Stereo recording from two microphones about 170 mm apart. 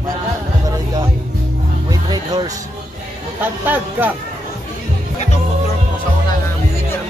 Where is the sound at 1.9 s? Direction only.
20° right (ahead or behind).